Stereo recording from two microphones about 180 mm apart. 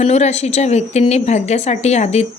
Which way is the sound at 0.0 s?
40° left (ahead or behind).